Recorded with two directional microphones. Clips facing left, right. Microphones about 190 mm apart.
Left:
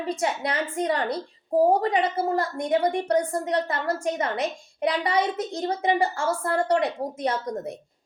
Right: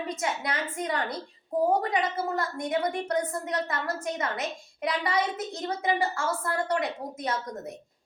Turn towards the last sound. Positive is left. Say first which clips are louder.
# left 5 dB
turn(degrees=30)  # may be behind; listen again after turning